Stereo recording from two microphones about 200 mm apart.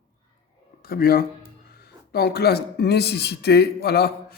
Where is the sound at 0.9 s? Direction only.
50° left (ahead or behind).